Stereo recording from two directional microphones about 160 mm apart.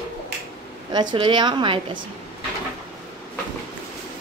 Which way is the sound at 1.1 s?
30° right (ahead or behind).